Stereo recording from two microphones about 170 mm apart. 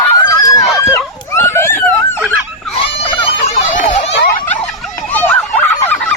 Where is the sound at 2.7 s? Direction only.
35° left (ahead or behind).